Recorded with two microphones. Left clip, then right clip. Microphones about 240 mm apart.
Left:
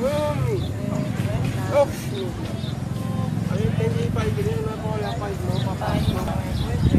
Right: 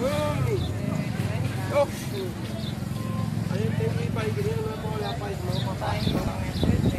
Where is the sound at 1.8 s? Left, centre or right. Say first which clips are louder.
Left 4 dB; left.